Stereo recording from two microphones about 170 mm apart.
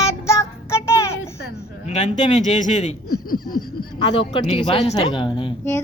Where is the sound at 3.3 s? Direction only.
60° left (ahead or behind).